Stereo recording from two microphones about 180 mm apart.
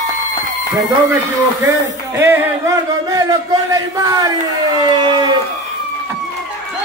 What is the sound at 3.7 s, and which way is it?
Speech, 20° right (ahead or behind).